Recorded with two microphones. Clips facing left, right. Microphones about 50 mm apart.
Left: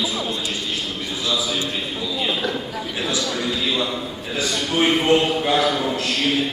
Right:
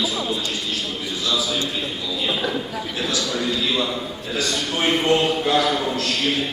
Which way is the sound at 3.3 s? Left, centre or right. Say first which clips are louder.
Even; centre.